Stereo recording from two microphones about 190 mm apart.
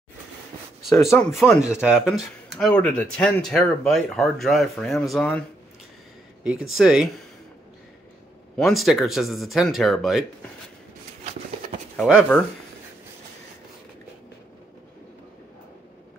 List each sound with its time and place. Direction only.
0.9 s speech: 15° left (ahead or behind)
1.6 s speech: 5° right (ahead or behind)
6.8 s speech: centre (ahead or behind)
8.5 s speech: centre (ahead or behind)
12.0 s speech: 5° right (ahead or behind)